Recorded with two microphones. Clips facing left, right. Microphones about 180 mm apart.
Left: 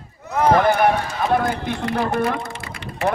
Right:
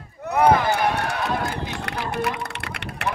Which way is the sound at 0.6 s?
60° left (ahead or behind).